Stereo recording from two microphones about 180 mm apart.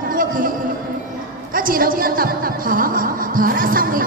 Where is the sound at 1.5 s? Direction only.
50° right (ahead or behind).